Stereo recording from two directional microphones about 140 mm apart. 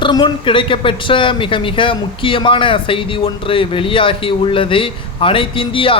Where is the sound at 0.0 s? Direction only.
35° left (ahead or behind).